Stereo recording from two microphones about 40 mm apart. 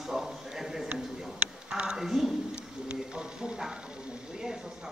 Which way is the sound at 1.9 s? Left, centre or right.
Centre.